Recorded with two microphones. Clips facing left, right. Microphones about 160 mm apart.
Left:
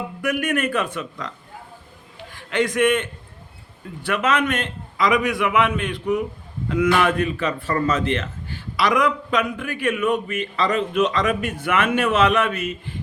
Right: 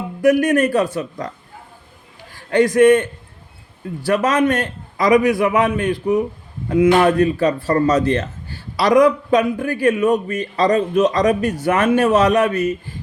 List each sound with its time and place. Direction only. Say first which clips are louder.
0.2 s a man's voice: right 9 dB; 35° right (ahead or behind)
2.5 s a man's voice: right 7 dB; 35° right (ahead or behind)
4.0 s a man's voice: right 5 dB; 35° right (ahead or behind)